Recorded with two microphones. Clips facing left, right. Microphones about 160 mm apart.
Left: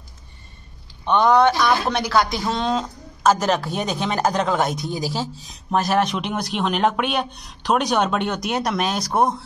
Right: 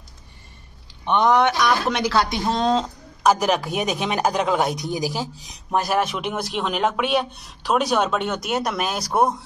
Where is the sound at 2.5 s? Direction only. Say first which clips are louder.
Right 4 dB; 30° right (ahead or behind).